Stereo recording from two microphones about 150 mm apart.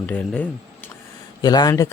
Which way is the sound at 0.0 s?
10° left (ahead or behind).